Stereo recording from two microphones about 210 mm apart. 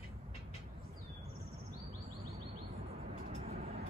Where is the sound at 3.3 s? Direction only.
30° right (ahead or behind).